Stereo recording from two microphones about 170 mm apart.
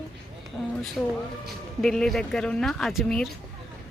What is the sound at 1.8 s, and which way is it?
Speech, centre (ahead or behind).